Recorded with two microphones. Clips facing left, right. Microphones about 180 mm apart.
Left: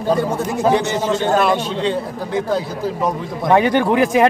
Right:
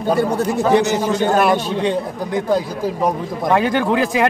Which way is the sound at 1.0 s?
15° right (ahead or behind).